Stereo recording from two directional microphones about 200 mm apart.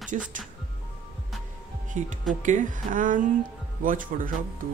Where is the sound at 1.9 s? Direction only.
35° right (ahead or behind).